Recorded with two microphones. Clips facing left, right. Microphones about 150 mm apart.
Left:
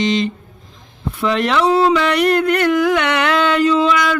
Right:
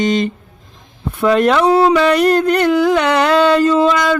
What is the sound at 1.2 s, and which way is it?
Speech, 45° right (ahead or behind).